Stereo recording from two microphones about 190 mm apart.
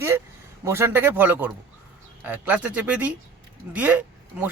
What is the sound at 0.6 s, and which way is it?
A man's voice, 10° right (ahead or behind).